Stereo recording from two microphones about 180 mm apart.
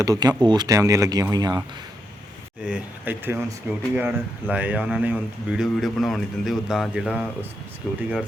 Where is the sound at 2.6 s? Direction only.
5° right (ahead or behind).